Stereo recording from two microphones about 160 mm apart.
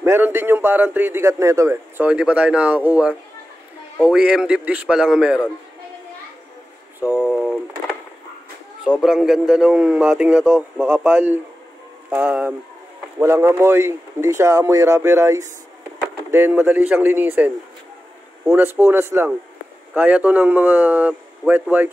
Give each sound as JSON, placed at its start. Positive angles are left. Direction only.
{"t": 0.0, "sound": "a man's voice", "side_deg": -15}
{"t": 7.0, "sound": "speech", "side_deg": -10}
{"t": 9.0, "sound": "a man's voice", "side_deg": -5}